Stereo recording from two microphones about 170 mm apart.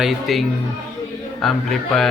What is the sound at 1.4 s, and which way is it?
Speech, centre (ahead or behind).